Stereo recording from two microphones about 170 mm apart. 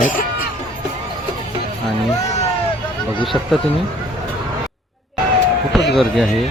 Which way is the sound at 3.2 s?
Centre (ahead or behind).